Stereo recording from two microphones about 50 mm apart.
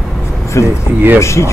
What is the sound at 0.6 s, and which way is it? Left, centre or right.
Speech, left.